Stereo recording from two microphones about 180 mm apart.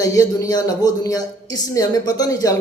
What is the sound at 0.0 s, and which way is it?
A man's voice, 20° left (ahead or behind).